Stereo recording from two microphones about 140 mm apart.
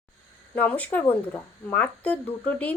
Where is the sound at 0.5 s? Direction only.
10° left (ahead or behind).